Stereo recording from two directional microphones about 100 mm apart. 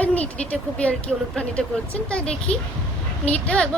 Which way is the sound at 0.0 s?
15° left (ahead or behind).